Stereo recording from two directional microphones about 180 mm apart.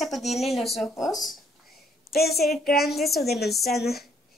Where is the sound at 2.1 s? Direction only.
60° left (ahead or behind).